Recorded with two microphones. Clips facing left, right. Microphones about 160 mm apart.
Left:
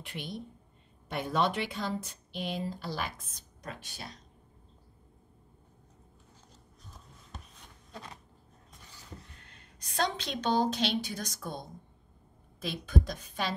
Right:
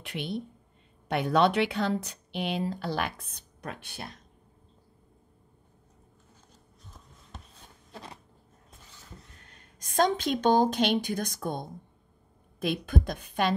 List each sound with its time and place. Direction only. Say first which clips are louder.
0.0 s speech: right 6 dB; 70° right (ahead or behind)
9.4 s a woman's voice: right 1 dB; 45° right (ahead or behind)